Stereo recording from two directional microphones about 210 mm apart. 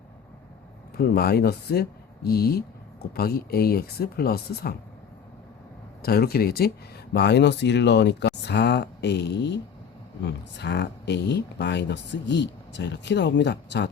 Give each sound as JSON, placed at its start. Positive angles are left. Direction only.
{"t": 0.9, "sound": "speech", "side_deg": 50}
{"t": 6.0, "sound": "speech", "side_deg": 45}